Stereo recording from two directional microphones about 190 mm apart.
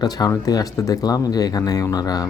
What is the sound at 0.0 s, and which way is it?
Speech, 20° left (ahead or behind).